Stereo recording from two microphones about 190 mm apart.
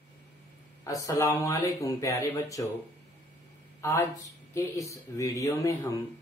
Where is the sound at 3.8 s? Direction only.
15° left (ahead or behind).